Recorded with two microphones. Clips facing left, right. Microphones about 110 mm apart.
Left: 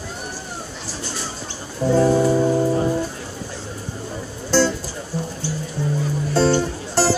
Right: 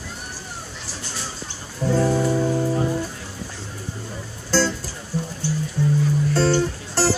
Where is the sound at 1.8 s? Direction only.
20° left (ahead or behind).